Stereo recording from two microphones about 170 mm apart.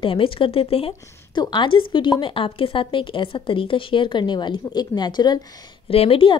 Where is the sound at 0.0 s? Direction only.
30° left (ahead or behind).